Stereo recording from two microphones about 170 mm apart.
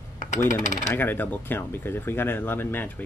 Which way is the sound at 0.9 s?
10° left (ahead or behind).